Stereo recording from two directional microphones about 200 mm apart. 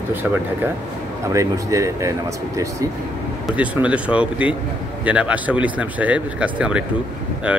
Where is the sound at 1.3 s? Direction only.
15° right (ahead or behind).